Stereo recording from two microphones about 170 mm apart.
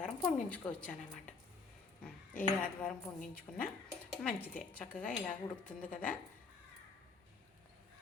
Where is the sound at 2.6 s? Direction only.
5° left (ahead or behind).